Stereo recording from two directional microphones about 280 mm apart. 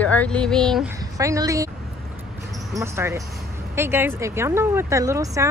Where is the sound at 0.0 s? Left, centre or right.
Centre.